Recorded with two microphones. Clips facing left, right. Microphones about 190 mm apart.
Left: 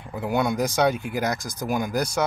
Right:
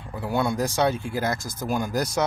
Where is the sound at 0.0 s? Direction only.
20° left (ahead or behind).